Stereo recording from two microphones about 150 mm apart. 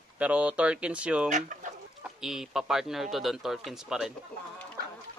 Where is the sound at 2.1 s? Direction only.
5° right (ahead or behind).